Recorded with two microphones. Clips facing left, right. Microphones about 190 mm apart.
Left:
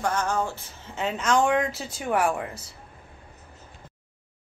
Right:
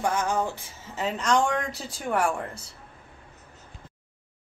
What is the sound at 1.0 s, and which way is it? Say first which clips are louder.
Speech: left 1 dB; centre (ahead or behind).